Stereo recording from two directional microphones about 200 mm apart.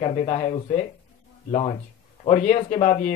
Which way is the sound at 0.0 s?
30° left (ahead or behind).